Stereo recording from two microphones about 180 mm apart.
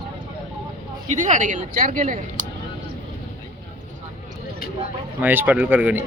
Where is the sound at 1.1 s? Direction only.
45° right (ahead or behind).